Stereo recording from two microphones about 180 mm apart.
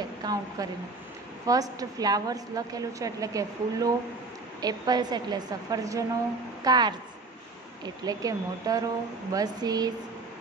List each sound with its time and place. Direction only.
0.2 s a woman's voice: 20° right (ahead or behind)